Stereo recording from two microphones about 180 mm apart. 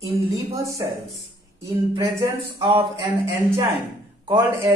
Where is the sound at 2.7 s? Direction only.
25° right (ahead or behind).